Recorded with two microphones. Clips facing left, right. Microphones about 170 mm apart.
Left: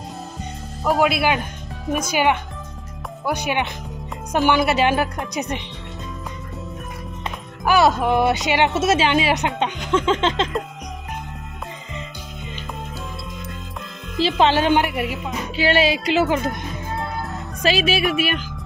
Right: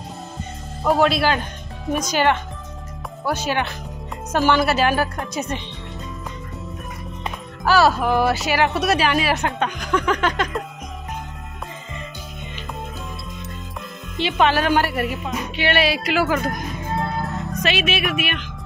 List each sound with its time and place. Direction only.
0.8 s a woman's voice: 10° left (ahead or behind)
7.6 s speech: 20° left (ahead or behind)
14.4 s speech: 25° left (ahead or behind); by 15.3 s 10° left (ahead or behind)
15.5 s speech: 30° left (ahead or behind)
17.6 s speech: 30° left (ahead or behind)